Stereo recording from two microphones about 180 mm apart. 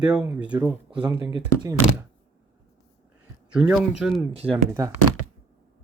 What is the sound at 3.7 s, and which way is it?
Speech, 5° right (ahead or behind).